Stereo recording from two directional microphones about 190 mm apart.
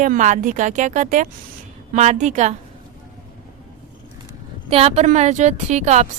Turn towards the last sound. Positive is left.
turn(degrees=-35)  # may be behind; listen again after turning